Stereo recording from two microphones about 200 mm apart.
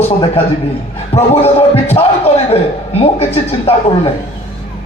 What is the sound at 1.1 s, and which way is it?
A man's voice, 30° left (ahead or behind).